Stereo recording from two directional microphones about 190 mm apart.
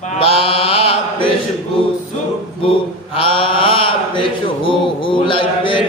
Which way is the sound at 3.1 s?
30° left (ahead or behind).